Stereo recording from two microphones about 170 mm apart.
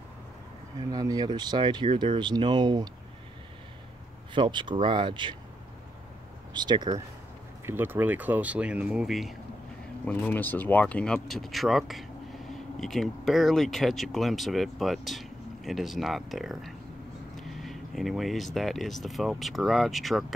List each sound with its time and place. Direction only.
0.7 s speech: 20° right (ahead or behind)
4.3 s speech: 30° right (ahead or behind)
6.5 s speech: 25° right (ahead or behind)
7.6 s speech: 10° right (ahead or behind)
10.0 s speech: 10° left (ahead or behind)